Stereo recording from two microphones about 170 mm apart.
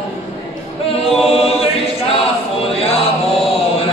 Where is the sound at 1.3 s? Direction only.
35° left (ahead or behind).